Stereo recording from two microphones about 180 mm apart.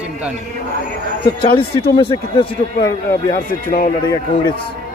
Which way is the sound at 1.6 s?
30° left (ahead or behind).